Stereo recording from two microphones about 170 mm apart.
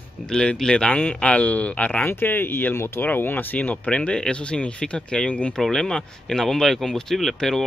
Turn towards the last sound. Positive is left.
turn(degrees=0)  # may be behind; listen again after turning